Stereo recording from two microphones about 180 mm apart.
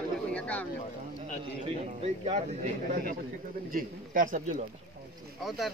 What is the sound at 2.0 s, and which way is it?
A man's voice, 35° right (ahead or behind).